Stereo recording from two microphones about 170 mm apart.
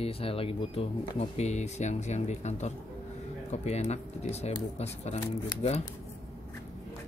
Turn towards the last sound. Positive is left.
turn(degrees=40)  # may be behind; listen again after turning